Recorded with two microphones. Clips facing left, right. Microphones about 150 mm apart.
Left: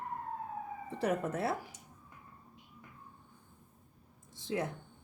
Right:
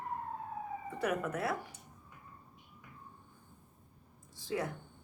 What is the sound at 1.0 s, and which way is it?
Speech, 30° left (ahead or behind).